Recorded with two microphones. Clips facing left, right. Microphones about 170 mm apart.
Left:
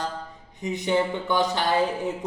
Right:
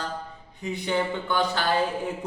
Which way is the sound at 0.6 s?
20° left (ahead or behind).